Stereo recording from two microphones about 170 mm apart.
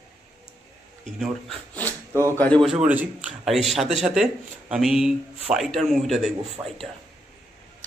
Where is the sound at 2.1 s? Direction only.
15° right (ahead or behind).